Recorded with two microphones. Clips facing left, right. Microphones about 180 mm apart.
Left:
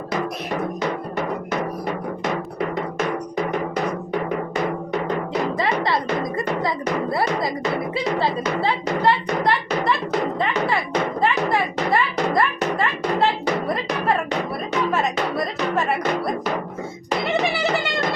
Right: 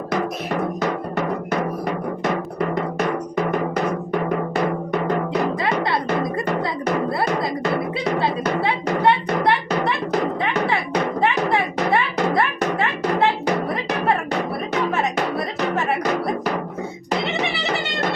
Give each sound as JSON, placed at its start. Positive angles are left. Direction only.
{"t": 5.5, "sound": "music", "side_deg": -55}
{"t": 7.9, "sound": "music", "side_deg": -60}
{"t": 11.2, "sound": "music", "side_deg": -65}